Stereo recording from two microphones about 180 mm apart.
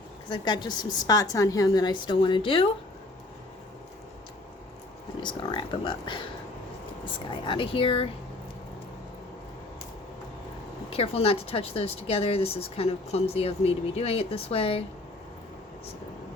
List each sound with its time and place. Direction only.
0.3 s a woman's voice: 25° left (ahead or behind)
5.2 s a woman's voice: 25° left (ahead or behind)
10.8 s speech: 30° left (ahead or behind)